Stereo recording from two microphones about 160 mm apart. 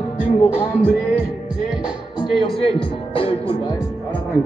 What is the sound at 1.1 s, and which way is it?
Music, 10° right (ahead or behind).